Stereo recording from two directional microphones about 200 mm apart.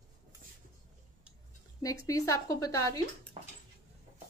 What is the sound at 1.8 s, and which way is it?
Speech, 15° left (ahead or behind).